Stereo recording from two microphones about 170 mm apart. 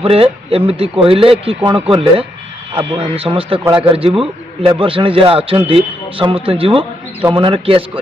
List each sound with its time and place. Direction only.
0.0 s a man's voice: 35° right (ahead or behind)
3.6 s a man's voice: 10° right (ahead or behind)
4.2 s a man's voice: 30° right (ahead or behind)